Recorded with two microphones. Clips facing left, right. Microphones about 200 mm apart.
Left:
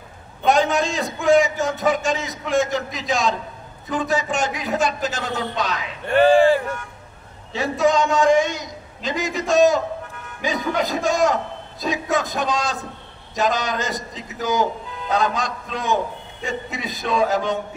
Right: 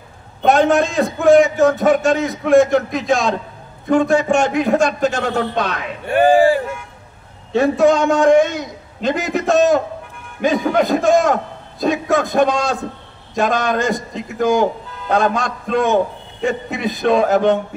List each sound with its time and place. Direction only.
0.4 s a man's voice: 55° right (ahead or behind)
6.1 s speech: 15° right (ahead or behind)
7.5 s a man's voice: 55° right (ahead or behind)